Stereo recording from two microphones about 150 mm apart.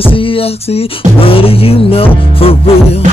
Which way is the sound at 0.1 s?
35° left (ahead or behind).